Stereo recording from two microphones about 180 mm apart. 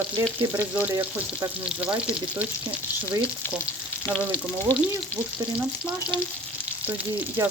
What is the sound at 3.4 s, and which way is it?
Frying, 10° left (ahead or behind).